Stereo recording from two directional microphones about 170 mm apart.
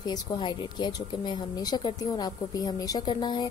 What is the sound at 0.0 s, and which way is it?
Speech, 25° left (ahead or behind).